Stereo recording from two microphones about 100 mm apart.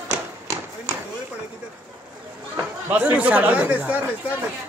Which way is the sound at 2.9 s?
15° right (ahead or behind).